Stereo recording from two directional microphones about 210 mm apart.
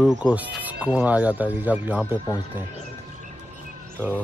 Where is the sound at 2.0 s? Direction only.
20° left (ahead or behind).